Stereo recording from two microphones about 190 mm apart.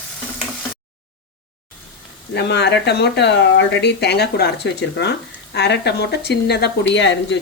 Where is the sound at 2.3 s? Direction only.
65° left (ahead or behind).